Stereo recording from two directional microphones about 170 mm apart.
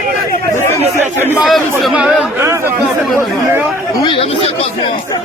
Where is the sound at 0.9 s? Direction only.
10° right (ahead or behind).